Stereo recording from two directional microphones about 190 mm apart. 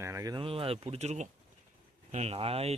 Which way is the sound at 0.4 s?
30° right (ahead or behind).